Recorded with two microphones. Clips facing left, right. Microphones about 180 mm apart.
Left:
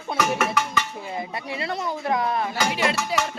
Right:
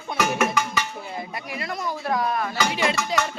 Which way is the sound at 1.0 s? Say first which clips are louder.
Left 2 dB; 20° left (ahead or behind).